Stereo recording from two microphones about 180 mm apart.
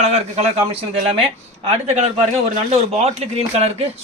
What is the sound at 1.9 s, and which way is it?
Speech, 35° right (ahead or behind).